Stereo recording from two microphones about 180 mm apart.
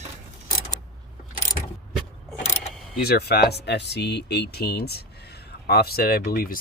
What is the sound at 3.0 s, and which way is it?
Speech, 60° left (ahead or behind).